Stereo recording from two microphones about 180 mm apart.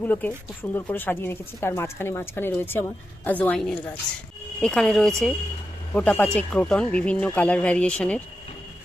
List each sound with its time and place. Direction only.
0.0 s speech: 10° left (ahead or behind)